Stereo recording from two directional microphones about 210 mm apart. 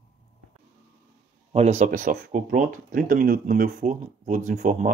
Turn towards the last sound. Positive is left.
turn(degrees=-35)  # may be behind; listen again after turning